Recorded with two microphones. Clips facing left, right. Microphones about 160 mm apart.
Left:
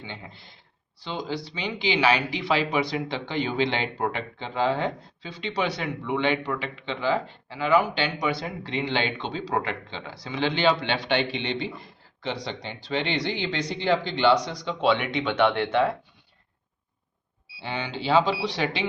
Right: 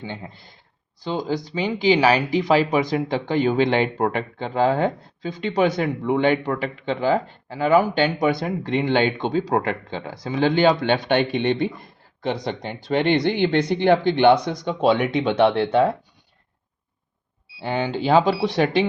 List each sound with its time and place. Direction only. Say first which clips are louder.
0.0 s speech: right 6 dB; 40° right (ahead or behind)
17.6 s speech: right 8 dB; 45° right (ahead or behind)